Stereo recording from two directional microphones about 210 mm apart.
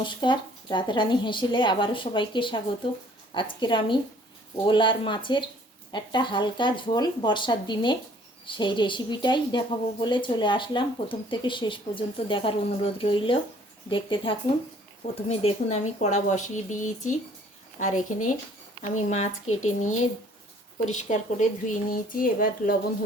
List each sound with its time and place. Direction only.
0.0 s a woman's voice: 20° left (ahead or behind)
17.8 s speech: 90° left
18.8 s speech: 35° left (ahead or behind)